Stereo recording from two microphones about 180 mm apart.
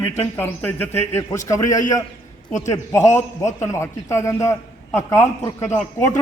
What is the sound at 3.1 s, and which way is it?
A man's voice, 15° left (ahead or behind).